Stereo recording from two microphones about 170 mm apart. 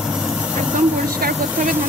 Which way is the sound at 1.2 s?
60° right (ahead or behind).